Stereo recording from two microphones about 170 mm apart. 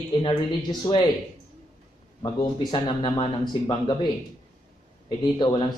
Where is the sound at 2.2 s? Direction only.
30° left (ahead or behind).